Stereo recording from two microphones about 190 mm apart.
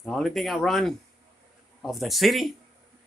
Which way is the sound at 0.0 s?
Centre (ahead or behind).